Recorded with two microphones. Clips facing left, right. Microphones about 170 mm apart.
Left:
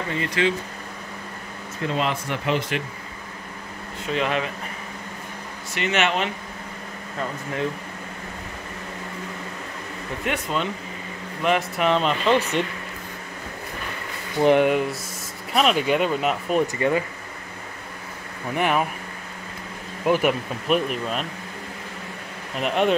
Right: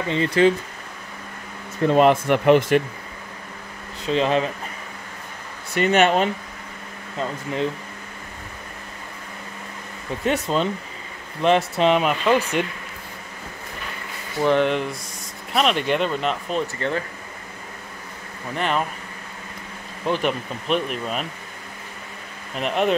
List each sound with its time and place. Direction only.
0.1 s speech: 30° right (ahead or behind)
1.9 s speech: 55° right (ahead or behind)
4.0 s speech: 30° right (ahead or behind)
5.8 s speech: 40° right (ahead or behind)
10.2 s speech: 35° right (ahead or behind)
11.9 s speech: 10° right (ahead or behind)
14.4 s speech: 10° left (ahead or behind)
18.5 s speech: 10° left (ahead or behind)
20.1 s speech: 10° left (ahead or behind)
22.6 s speech: centre (ahead or behind)